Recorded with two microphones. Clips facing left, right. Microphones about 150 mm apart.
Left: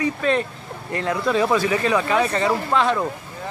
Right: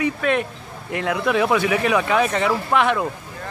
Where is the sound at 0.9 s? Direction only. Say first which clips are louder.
Right 1 dB; 10° right (ahead or behind).